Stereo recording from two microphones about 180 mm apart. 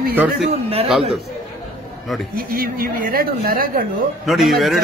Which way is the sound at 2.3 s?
55° right (ahead or behind).